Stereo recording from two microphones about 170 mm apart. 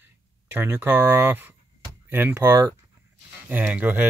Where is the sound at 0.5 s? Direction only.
10° right (ahead or behind).